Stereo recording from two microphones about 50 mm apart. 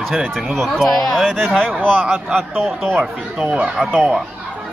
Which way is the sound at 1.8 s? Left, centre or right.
Right.